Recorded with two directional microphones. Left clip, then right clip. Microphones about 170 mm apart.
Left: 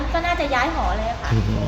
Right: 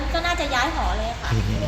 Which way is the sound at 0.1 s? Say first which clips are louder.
Left 2 dB; 20° left (ahead or behind).